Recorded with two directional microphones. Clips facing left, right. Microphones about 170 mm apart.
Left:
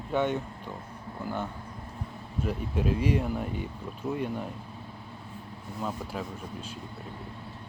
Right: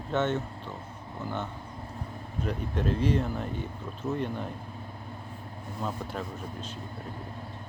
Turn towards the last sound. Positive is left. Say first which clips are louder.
# right 1 dB
turn(degrees=10)  # may be behind; listen again after turning